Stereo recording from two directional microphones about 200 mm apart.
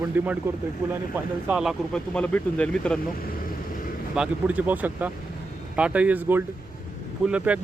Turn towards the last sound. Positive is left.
turn(degrees=-5)  # may be behind; listen again after turning